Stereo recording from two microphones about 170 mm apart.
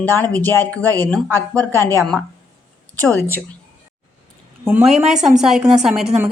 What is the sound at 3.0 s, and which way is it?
Speech, 10° left (ahead or behind).